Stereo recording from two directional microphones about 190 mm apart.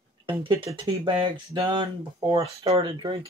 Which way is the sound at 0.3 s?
25° right (ahead or behind).